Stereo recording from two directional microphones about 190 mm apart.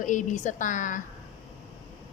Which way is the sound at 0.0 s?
40° left (ahead or behind).